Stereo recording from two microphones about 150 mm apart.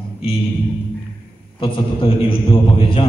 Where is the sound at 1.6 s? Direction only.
35° left (ahead or behind).